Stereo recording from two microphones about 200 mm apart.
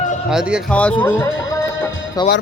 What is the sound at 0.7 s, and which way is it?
Speech, 5° left (ahead or behind).